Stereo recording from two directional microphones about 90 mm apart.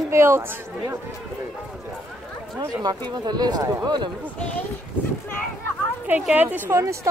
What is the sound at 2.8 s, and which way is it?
Speech, 50° right (ahead or behind).